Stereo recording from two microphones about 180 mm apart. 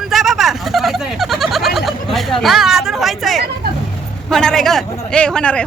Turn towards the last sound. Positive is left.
turn(degrees=5)  # may be behind; listen again after turning